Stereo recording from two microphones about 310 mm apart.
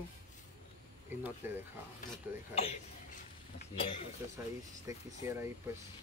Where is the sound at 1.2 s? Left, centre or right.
Centre.